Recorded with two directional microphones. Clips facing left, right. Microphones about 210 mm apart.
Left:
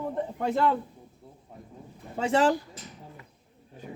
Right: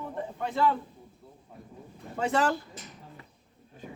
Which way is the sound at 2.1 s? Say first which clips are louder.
Left 3 dB; 25° left (ahead or behind).